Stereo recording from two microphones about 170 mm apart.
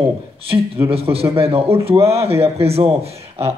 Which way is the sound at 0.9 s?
35° right (ahead or behind).